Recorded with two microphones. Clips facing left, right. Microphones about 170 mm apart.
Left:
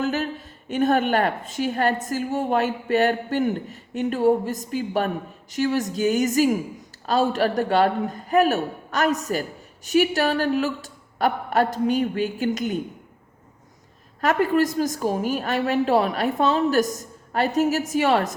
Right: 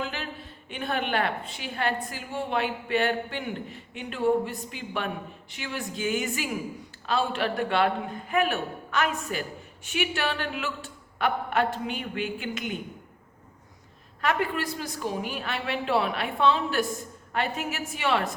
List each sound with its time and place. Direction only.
0.0 s a woman's voice: 45° left (ahead or behind)
14.2 s a woman's voice: 40° left (ahead or behind)